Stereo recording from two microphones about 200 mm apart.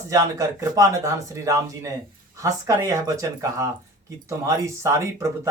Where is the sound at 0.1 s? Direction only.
15° right (ahead or behind).